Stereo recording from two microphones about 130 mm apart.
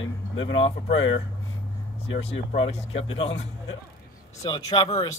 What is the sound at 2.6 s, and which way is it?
Speech, 45° left (ahead or behind).